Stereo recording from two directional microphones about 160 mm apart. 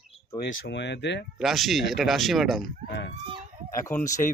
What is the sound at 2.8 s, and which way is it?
Speech, 90° left.